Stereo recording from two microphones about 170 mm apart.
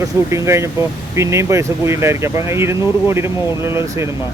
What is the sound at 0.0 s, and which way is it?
Speech, 15° right (ahead or behind).